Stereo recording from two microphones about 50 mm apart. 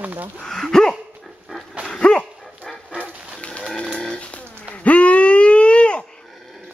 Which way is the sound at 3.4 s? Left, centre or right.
Left.